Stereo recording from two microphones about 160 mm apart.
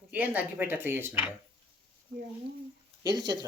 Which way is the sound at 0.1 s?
10° right (ahead or behind).